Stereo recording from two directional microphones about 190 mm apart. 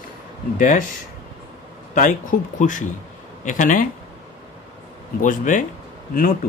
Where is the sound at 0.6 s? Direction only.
45° left (ahead or behind).